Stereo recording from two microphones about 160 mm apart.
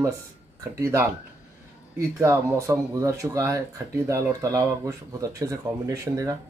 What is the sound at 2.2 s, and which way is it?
Speech, 20° right (ahead or behind).